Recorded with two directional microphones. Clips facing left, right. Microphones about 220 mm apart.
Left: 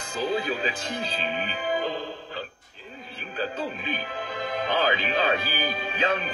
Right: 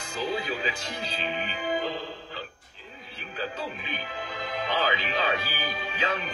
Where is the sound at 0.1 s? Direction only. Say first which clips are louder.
Left 3 dB; 50° left (ahead or behind).